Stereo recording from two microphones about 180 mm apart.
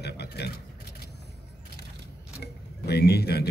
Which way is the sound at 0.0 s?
65° left (ahead or behind).